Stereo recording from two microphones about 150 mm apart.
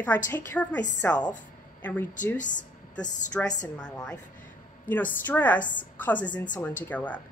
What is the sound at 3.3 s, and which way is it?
Speech, 5° left (ahead or behind).